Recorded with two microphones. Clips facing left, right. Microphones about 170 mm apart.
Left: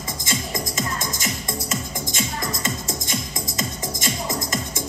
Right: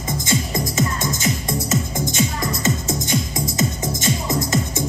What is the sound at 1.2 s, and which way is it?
Music, 20° right (ahead or behind).